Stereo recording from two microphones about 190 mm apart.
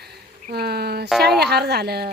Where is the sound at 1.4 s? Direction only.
60° right (ahead or behind).